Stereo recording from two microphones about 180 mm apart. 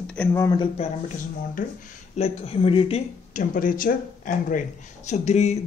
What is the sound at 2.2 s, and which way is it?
Speech, 30° left (ahead or behind).